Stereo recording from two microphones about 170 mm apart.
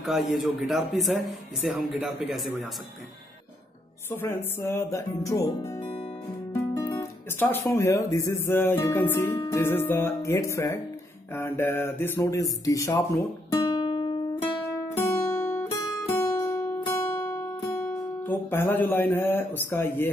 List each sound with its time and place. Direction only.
0.0 s speech: centre (ahead or behind)
4.6 s speech: 15° left (ahead or behind)
6.5 s music: 20° left (ahead or behind)
7.3 s speech: 10° left (ahead or behind); by 14.5 s 30° left (ahead or behind)
15.0 s guitar: 15° left (ahead or behind)
18.2 s speech: 10° left (ahead or behind)